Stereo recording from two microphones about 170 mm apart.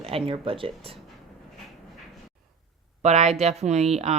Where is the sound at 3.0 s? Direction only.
40° right (ahead or behind).